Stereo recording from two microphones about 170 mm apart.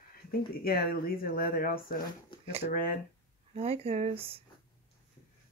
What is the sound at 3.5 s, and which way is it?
Speech, 35° right (ahead or behind).